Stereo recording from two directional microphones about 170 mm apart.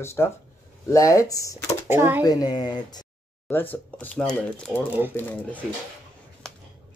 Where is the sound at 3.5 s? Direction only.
10° left (ahead or behind).